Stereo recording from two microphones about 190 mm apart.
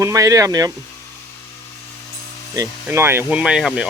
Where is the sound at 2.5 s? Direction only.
15° right (ahead or behind).